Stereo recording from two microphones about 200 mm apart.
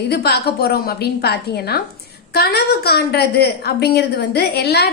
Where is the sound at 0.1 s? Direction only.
55° left (ahead or behind).